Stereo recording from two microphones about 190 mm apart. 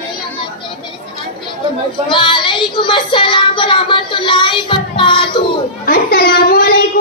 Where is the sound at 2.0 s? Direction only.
25° left (ahead or behind).